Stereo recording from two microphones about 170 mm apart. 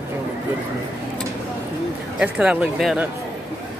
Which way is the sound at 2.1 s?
5° right (ahead or behind).